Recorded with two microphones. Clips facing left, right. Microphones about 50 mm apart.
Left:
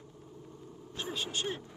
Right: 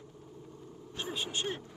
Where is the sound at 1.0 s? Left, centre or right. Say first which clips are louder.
Even; right.